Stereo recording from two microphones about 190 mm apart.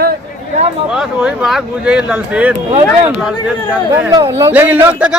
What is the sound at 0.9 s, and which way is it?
Speech, 5° right (ahead or behind).